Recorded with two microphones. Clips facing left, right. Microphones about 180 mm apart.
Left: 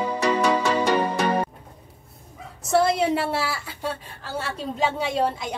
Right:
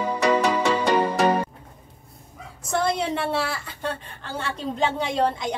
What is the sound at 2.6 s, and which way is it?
A woman's voice, 5° left (ahead or behind).